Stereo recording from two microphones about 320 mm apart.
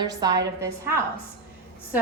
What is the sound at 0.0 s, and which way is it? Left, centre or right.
Speech, centre.